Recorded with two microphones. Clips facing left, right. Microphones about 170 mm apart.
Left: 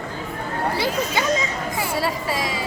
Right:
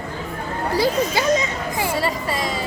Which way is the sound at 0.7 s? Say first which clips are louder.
Right 7 dB; 35° right (ahead or behind).